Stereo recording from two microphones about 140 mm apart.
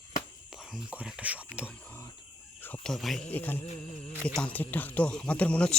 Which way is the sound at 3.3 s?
15° left (ahead or behind).